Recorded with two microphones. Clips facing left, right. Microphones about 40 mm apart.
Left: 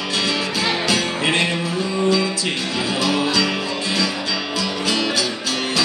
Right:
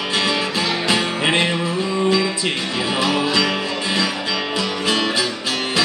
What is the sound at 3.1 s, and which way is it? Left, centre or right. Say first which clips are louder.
Music: right 1 dB; centre.